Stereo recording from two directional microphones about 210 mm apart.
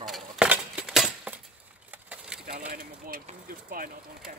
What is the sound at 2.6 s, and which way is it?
Speech, 40° right (ahead or behind).